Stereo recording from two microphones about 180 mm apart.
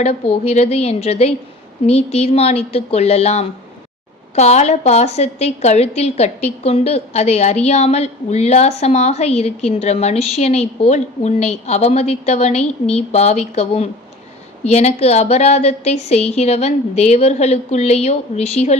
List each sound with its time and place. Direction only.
0.0 s a woman's voice: 35° left (ahead or behind)